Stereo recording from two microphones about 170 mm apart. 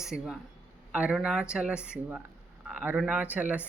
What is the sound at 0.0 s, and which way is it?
Speech, 5° right (ahead or behind).